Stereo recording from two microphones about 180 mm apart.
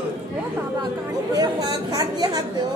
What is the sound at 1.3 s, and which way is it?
A woman's voice, 20° right (ahead or behind).